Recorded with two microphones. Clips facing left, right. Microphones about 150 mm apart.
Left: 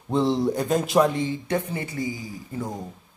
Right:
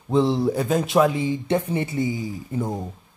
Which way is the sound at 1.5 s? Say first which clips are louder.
Right 4 dB; 25° right (ahead or behind).